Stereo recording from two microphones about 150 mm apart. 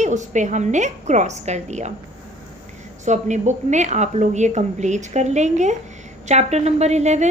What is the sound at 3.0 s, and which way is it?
A woman's voice, 50° right (ahead or behind).